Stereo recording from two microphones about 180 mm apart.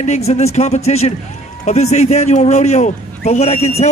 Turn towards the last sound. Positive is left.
turn(degrees=35)  # may be behind; listen again after turning